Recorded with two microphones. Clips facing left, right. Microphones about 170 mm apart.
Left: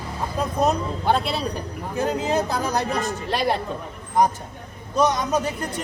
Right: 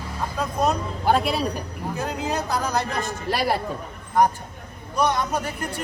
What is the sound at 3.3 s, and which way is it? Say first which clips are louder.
Speech: even; 5° right (ahead or behind).